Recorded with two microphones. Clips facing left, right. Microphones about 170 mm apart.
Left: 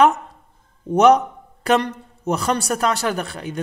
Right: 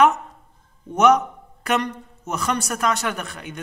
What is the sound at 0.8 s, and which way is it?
A man's voice, 35° left (ahead or behind).